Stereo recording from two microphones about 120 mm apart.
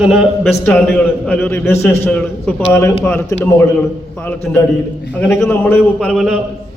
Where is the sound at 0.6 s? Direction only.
15° left (ahead or behind).